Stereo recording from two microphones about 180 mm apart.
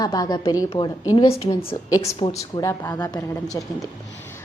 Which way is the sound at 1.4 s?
20° left (ahead or behind).